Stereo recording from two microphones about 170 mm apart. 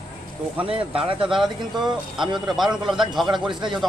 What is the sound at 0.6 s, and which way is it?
Speech, 30° right (ahead or behind).